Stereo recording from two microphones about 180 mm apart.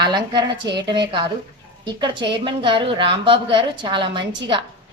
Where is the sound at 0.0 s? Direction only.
25° right (ahead or behind).